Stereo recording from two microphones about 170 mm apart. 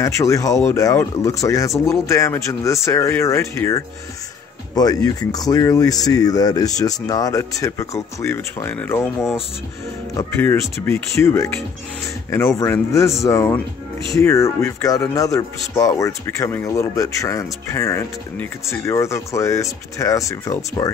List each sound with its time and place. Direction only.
0.0 s speech: 20° left (ahead or behind)
10.1 s speech: 10° left (ahead or behind)